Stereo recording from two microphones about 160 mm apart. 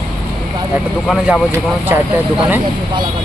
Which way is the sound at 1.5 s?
15° right (ahead or behind).